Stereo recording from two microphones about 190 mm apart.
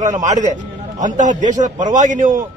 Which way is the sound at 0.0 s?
40° right (ahead or behind).